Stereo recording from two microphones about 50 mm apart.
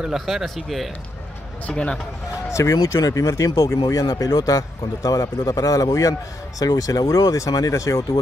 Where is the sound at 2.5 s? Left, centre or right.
Left.